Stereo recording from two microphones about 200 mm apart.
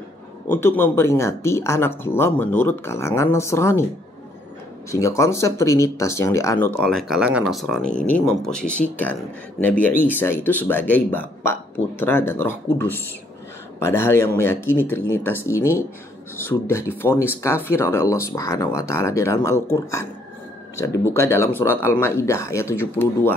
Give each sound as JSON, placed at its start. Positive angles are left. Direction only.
{"t": 0.5, "sound": "speech", "side_deg": 10}
{"t": 4.9, "sound": "speech", "side_deg": 15}